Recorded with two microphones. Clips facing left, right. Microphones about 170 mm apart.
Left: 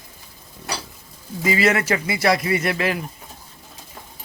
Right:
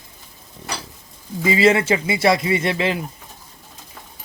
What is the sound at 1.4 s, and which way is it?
Speech, 25° right (ahead or behind).